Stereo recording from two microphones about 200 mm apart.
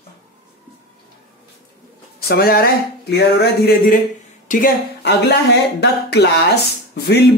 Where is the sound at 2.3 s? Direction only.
50° left (ahead or behind).